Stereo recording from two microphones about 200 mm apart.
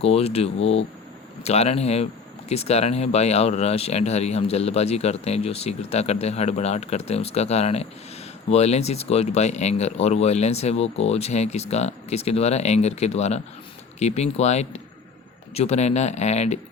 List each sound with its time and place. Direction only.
0.0 s speech: 30° left (ahead or behind)